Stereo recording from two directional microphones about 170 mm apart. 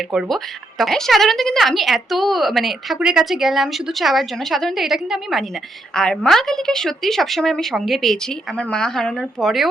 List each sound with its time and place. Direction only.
0.1 s a woman's voice: centre (ahead or behind)